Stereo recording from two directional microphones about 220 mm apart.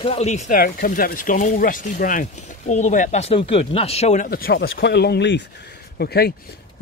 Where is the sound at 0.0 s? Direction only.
30° left (ahead or behind).